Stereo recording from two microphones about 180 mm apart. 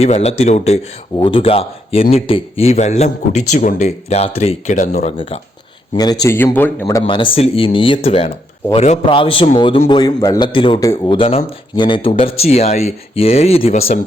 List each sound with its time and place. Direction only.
0.0 s speech: 35° left (ahead or behind)
5.9 s a man's voice: 20° left (ahead or behind)
7.0 s a man's voice: 30° left (ahead or behind)